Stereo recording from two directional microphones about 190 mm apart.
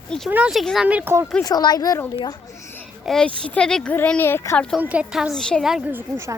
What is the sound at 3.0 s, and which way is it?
Speech, 5° left (ahead or behind).